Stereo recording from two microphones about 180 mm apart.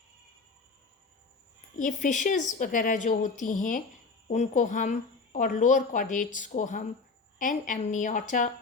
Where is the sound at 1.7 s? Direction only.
45° left (ahead or behind).